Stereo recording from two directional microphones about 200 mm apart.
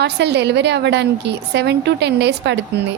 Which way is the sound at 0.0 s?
60° right (ahead or behind).